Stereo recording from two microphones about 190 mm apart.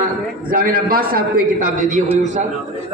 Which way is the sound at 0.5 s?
50° right (ahead or behind).